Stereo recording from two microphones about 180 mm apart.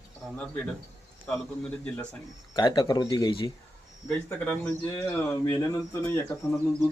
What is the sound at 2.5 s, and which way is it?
Speech, 25° left (ahead or behind).